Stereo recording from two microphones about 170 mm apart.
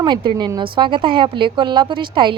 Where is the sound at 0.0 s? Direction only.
25° right (ahead or behind).